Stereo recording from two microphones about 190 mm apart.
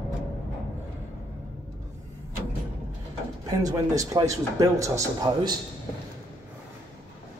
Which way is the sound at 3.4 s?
20° right (ahead or behind).